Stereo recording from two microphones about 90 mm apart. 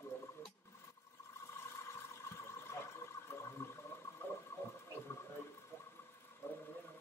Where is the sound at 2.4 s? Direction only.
30° left (ahead or behind).